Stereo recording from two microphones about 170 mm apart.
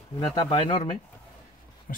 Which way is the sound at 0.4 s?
30° left (ahead or behind).